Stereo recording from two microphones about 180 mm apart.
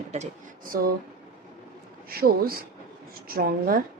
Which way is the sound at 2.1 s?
55° right (ahead or behind).